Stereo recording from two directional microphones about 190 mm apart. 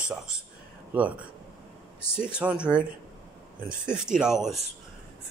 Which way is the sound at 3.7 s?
5° right (ahead or behind).